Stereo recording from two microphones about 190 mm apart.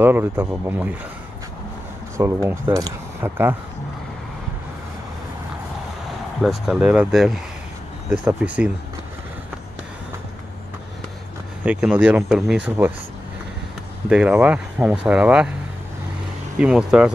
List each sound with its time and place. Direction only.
0.0 s speech: 10° right (ahead or behind)
2.1 s speech: 15° right (ahead or behind)
6.4 s speech: centre (ahead or behind)
11.6 s speech: 5° right (ahead or behind)
14.0 s speech: 5° right (ahead or behind)
16.5 s speech: 5° right (ahead or behind)